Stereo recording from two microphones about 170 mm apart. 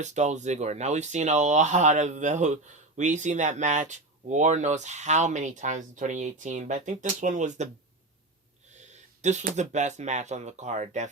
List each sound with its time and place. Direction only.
0.0 s speech: 45° right (ahead or behind)
8.7 s speech: 45° right (ahead or behind)